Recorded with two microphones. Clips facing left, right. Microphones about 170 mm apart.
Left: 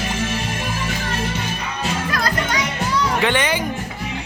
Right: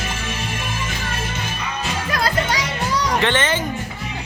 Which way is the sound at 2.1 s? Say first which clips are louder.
Right 5 dB; 30° right (ahead or behind).